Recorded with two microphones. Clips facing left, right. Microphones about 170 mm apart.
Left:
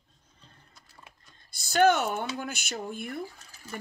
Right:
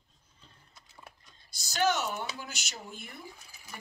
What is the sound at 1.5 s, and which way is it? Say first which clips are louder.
Speech: left 7 dB; 55° left (ahead or behind).